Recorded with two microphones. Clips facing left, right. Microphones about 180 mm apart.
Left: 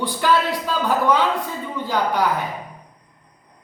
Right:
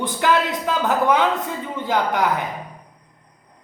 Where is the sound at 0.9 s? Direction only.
20° right (ahead or behind).